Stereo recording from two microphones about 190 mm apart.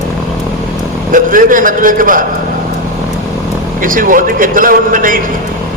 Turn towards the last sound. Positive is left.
turn(degrees=-45)  # may be behind; listen again after turning